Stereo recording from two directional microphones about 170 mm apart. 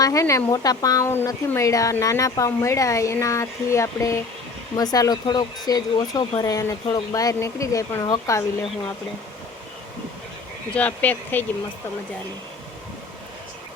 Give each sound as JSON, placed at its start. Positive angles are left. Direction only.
{"t": 0.0, "sound": "speech", "side_deg": 20}
{"t": 10.8, "sound": "speech", "side_deg": 10}